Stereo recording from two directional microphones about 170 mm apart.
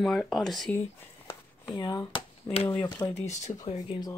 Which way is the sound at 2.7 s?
15° left (ahead or behind).